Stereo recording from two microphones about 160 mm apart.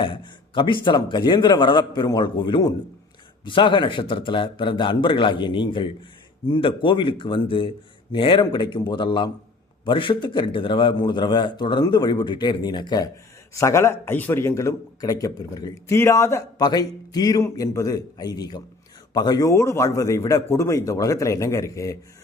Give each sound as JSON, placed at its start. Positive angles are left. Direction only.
{"t": 0.0, "sound": "a man's voice", "side_deg": 30}